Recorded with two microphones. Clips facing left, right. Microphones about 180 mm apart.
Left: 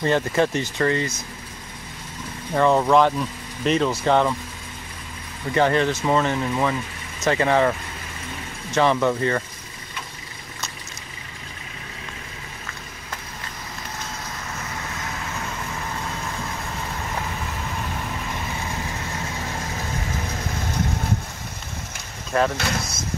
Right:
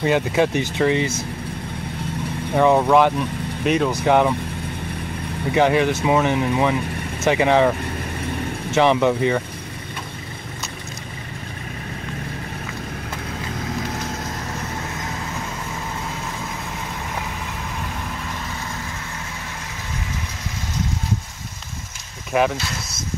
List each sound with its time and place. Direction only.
0.0 s speech: 5° right (ahead or behind)
0.5 s speech: 15° right (ahead or behind)
2.5 s speech: 15° right (ahead or behind)
5.5 s speech: 10° right (ahead or behind)
8.7 s speech: 15° right (ahead or behind)
22.3 s speech: 10° right (ahead or behind)